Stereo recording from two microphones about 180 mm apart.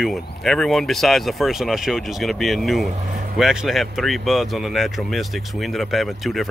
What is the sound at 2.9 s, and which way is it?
Speech, 40° right (ahead or behind).